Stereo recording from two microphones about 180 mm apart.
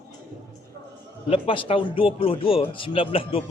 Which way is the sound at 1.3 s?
30° left (ahead or behind).